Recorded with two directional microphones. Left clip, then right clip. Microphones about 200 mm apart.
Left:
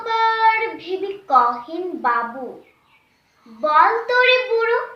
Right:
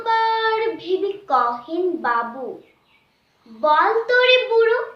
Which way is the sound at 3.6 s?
15° right (ahead or behind).